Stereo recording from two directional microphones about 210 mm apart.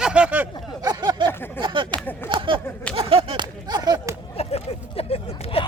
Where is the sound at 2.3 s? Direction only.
25° right (ahead or behind).